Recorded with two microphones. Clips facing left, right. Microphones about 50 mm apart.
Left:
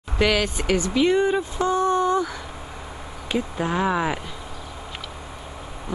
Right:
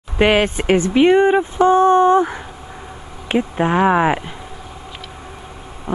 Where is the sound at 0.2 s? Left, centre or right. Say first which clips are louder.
Right 7 dB; right.